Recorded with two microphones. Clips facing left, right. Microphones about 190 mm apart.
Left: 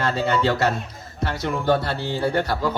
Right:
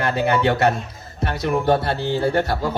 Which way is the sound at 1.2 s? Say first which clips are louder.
Right 3 dB; 20° right (ahead or behind).